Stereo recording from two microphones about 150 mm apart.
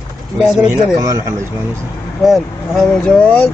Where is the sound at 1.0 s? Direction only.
20° right (ahead or behind).